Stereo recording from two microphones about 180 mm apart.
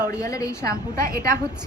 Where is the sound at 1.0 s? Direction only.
55° right (ahead or behind).